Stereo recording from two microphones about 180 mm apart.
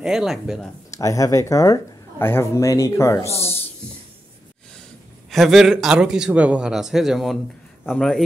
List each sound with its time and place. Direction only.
0.0 s a man's voice: centre (ahead or behind)
0.9 s speech: 20° left (ahead or behind)
5.3 s a man's voice: centre (ahead or behind)